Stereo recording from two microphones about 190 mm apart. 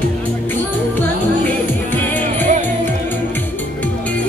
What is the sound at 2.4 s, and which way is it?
Music, 40° right (ahead or behind).